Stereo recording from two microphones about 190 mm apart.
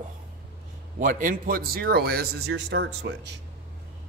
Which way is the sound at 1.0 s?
45° right (ahead or behind).